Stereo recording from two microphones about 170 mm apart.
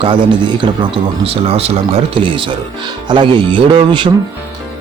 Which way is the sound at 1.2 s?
35° right (ahead or behind).